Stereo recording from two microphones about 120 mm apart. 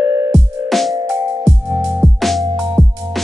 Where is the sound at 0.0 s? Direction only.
30° right (ahead or behind).